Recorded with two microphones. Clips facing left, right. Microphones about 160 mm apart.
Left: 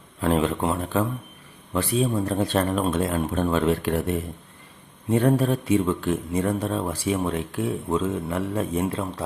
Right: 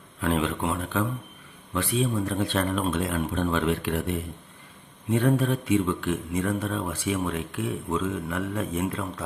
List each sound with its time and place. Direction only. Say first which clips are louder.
0.2 s speech: left 4 dB; 40° left (ahead or behind)
5.1 s speech: left 3 dB; 40° left (ahead or behind)